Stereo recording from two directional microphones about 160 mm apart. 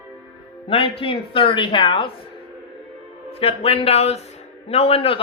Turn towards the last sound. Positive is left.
turn(degrees=35)  # may be behind; listen again after turning